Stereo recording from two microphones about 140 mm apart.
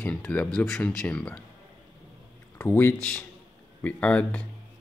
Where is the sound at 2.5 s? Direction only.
15° left (ahead or behind).